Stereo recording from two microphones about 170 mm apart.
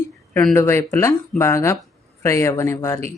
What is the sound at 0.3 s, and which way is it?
Speech, 10° left (ahead or behind).